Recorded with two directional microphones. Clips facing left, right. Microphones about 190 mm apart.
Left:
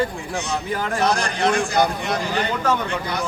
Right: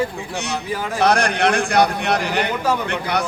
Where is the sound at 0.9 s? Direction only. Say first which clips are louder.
Right 5 dB; 65° right (ahead or behind).